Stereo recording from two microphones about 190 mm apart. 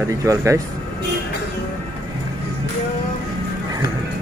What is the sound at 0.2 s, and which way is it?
Speech, 15° right (ahead or behind).